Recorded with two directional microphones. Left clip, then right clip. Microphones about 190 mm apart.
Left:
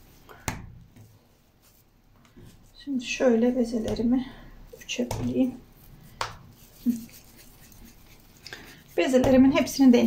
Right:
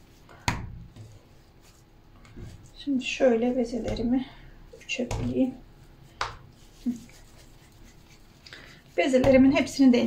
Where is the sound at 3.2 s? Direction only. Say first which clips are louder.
Even; 30° left (ahead or behind).